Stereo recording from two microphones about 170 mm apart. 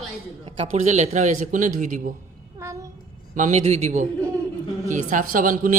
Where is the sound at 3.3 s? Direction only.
45° right (ahead or behind).